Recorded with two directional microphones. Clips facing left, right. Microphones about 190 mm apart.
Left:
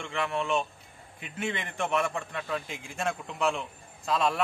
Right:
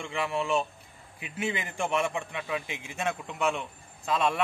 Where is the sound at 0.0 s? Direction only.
5° right (ahead or behind).